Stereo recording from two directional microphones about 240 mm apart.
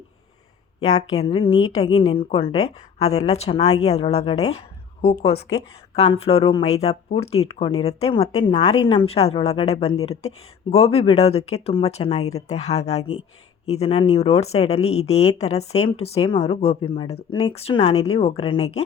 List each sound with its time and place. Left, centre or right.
0.8 s a woman's voice: left
6.0 s a woman's voice: left